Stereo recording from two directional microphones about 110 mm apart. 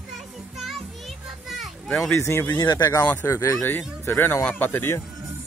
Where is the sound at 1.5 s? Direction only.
Centre (ahead or behind).